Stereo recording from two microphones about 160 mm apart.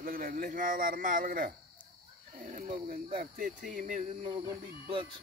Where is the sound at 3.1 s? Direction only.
55° right (ahead or behind).